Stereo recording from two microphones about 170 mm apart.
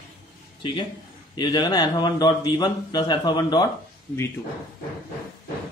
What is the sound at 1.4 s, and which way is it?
Speech, 25° left (ahead or behind).